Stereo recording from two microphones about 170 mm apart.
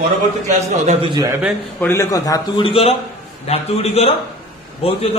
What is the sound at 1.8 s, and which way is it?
A man's voice, 15° left (ahead or behind).